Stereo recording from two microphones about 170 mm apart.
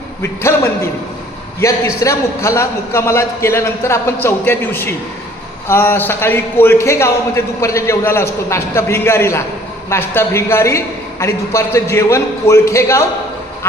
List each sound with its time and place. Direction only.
0.2 s a man's voice: 15° left (ahead or behind)